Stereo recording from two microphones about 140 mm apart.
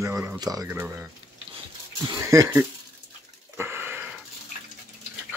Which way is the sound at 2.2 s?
20° right (ahead or behind).